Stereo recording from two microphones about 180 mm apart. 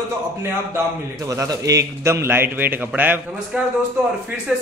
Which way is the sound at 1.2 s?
20° right (ahead or behind).